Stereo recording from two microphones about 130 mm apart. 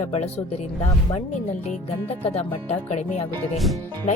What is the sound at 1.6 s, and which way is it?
Music, 55° left (ahead or behind).